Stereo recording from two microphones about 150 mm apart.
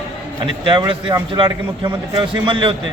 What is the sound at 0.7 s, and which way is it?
A man's voice, 35° right (ahead or behind).